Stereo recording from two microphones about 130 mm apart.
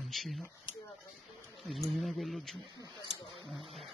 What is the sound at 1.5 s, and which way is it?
Speech, centre (ahead or behind).